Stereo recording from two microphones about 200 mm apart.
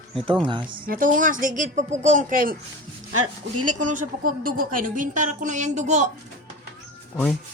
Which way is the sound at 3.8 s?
40° right (ahead or behind).